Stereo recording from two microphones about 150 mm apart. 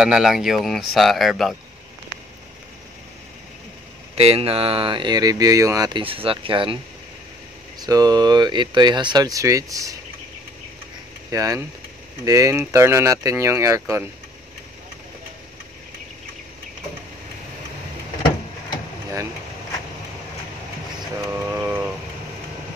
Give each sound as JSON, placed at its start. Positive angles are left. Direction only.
{"t": 0.0, "sound": "speech", "side_deg": -5}
{"t": 4.1, "sound": "speech", "side_deg": -40}
{"t": 5.9, "sound": "speech", "side_deg": -35}
{"t": 7.8, "sound": "speech", "side_deg": -25}
{"t": 11.2, "sound": "speech", "side_deg": -25}
{"t": 21.3, "sound": "a sound", "side_deg": -10}